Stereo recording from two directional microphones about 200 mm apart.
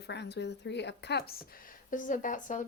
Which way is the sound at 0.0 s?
60° left (ahead or behind).